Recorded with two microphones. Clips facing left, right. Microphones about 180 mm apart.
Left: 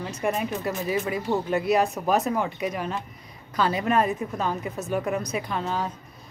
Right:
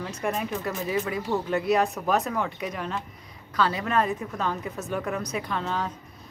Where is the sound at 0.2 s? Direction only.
5° left (ahead or behind).